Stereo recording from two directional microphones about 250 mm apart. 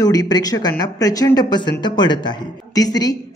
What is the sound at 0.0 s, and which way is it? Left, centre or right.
Speech, centre.